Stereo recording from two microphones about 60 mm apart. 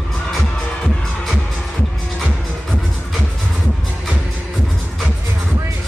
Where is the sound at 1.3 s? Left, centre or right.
Centre.